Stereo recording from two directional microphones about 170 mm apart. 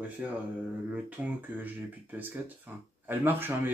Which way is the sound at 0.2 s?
10° right (ahead or behind).